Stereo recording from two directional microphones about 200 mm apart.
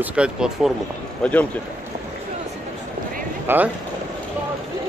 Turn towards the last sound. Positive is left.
turn(degrees=-10)  # may be behind; listen again after turning